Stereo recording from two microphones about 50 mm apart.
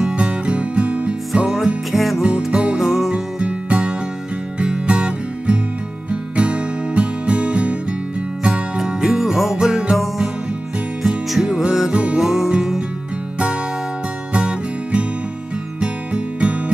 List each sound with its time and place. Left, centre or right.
0.1 s music: right
1.3 s music: centre
2.2 s music: right
2.8 s music: centre
3.1 s music: right
14.3 s music: right